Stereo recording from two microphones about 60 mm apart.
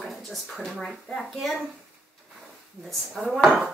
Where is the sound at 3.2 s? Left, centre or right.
Centre.